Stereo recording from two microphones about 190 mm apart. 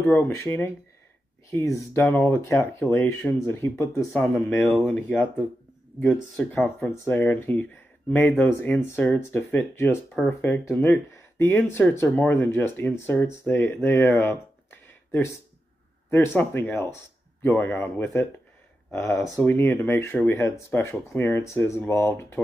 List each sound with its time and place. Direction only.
0.0 s speech: 10° left (ahead or behind)